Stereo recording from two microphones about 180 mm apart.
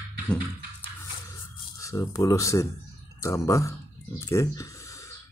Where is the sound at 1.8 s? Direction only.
15° left (ahead or behind).